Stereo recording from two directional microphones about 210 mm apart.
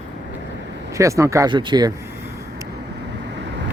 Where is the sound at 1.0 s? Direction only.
15° right (ahead or behind).